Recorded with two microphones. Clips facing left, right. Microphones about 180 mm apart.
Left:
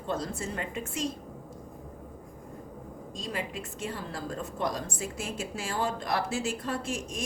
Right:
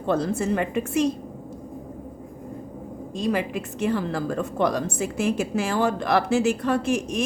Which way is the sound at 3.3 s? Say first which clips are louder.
Right 10 dB; 75° right (ahead or behind).